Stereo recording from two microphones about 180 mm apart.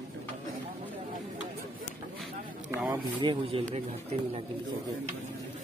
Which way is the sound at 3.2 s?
30° right (ahead or behind).